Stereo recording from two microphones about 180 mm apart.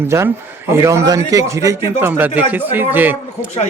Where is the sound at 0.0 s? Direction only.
15° right (ahead or behind).